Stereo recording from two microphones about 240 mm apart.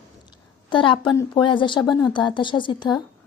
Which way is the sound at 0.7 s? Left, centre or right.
Left.